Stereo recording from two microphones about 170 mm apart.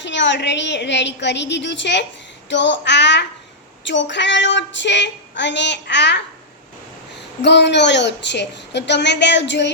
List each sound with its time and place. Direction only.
0.0 s child singing: 90° left
7.4 s child singing: 90° left